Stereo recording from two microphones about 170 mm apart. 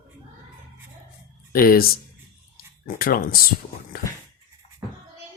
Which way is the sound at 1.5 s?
60° left (ahead or behind).